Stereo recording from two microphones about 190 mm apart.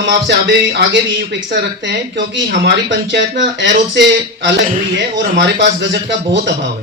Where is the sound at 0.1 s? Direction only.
60° right (ahead or behind).